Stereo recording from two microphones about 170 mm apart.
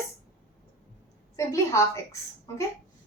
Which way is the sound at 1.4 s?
20° left (ahead or behind).